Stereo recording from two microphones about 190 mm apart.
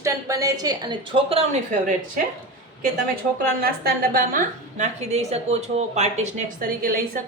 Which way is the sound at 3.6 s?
50° right (ahead or behind).